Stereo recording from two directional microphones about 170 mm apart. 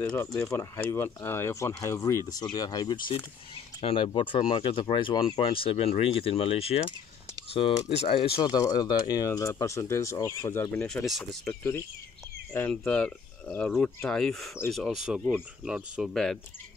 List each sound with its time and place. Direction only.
0.1 s speech: 15° left (ahead or behind)
10.9 s speech: centre (ahead or behind)
12.5 s speech: 5° left (ahead or behind)